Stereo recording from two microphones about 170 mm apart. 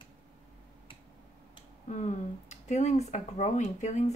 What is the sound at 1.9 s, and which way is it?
Speech, 45° left (ahead or behind).